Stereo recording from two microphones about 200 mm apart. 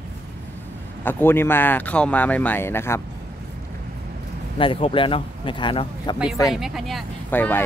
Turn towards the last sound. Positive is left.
turn(degrees=10)  # may be behind; listen again after turning